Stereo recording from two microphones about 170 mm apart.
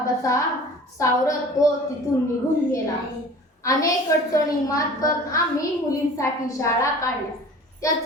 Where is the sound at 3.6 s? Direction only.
20° left (ahead or behind).